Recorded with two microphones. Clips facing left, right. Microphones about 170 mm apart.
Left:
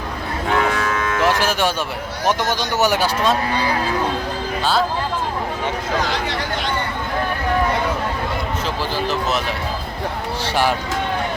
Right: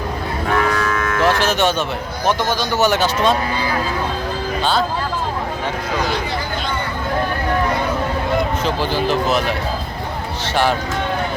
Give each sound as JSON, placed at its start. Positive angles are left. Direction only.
{"t": 0.9, "sound": "cattle", "side_deg": 25}
{"t": 1.3, "sound": "speech", "side_deg": 10}
{"t": 10.4, "sound": "speech", "side_deg": 10}